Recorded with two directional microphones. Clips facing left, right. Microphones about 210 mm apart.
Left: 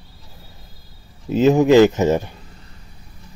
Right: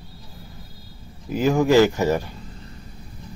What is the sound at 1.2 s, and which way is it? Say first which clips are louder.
Speech: left 5 dB; 25° left (ahead or behind).